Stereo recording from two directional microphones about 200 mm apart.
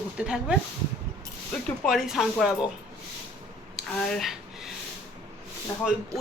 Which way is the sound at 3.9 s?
Centre (ahead or behind).